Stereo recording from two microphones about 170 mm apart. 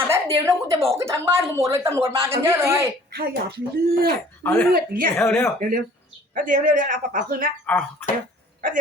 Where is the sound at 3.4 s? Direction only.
70° right (ahead or behind).